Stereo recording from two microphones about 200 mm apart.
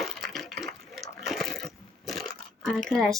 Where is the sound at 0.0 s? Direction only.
Centre (ahead or behind).